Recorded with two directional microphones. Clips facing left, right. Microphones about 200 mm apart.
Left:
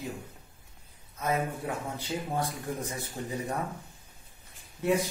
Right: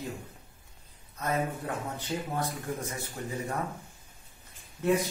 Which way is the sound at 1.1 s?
10° left (ahead or behind).